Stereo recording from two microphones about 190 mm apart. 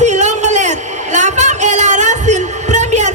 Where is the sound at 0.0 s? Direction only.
40° right (ahead or behind).